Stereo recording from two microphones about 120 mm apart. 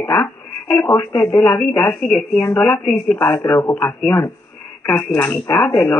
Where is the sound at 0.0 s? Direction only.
10° left (ahead or behind).